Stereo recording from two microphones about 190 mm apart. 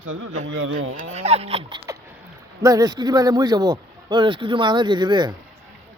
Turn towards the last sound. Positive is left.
turn(degrees=-25)  # may be behind; listen again after turning